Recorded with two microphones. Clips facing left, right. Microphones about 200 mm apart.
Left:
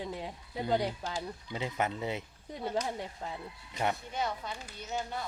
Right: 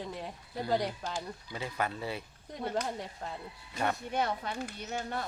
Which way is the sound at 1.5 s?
20° left (ahead or behind).